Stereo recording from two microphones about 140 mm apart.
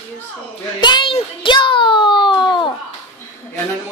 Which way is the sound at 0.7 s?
35° left (ahead or behind).